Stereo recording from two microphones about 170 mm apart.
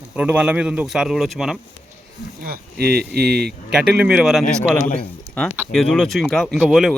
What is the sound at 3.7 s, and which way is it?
Speech, 5° right (ahead or behind).